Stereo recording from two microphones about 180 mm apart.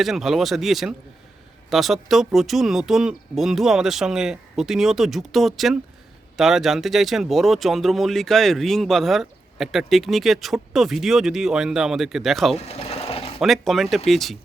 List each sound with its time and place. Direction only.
0.0 s speech: centre (ahead or behind)
12.5 s sewing machine: 35° left (ahead or behind)
13.4 s speech: centre (ahead or behind)